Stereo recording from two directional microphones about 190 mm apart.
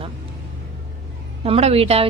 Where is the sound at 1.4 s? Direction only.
30° right (ahead or behind).